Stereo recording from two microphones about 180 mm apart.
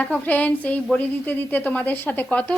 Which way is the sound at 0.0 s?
10° left (ahead or behind).